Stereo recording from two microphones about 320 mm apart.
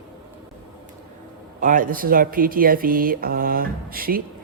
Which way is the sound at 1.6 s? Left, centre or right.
Right.